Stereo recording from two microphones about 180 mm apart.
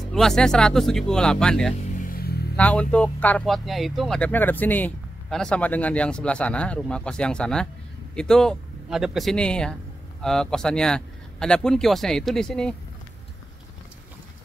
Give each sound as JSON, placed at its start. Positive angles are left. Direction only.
{"t": 0.1, "sound": "speech", "side_deg": 0}
{"t": 2.0, "sound": "a sound", "side_deg": 55}
{"t": 2.5, "sound": "speech", "side_deg": 5}